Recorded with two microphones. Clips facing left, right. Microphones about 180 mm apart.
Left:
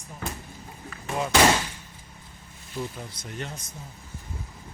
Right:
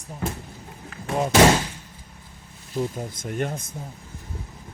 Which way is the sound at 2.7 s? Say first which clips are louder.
Right 7 dB; 45° right (ahead or behind).